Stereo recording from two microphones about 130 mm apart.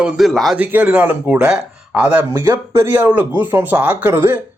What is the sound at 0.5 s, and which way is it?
Speech, 10° right (ahead or behind).